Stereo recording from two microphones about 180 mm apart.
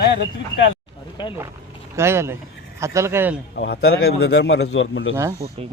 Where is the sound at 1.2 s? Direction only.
25° left (ahead or behind).